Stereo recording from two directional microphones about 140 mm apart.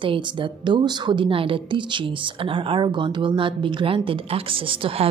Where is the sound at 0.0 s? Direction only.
35° right (ahead or behind).